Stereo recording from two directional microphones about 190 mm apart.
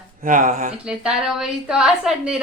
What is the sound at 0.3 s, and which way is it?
Speech, 45° right (ahead or behind).